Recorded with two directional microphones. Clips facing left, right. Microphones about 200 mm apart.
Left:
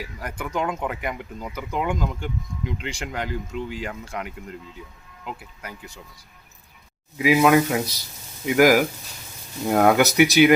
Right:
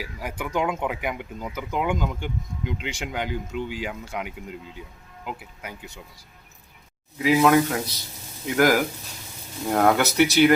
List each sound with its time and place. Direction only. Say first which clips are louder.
0.0 s speech: even; centre (ahead or behind)
7.2 s speech: left 1 dB; 10° left (ahead or behind)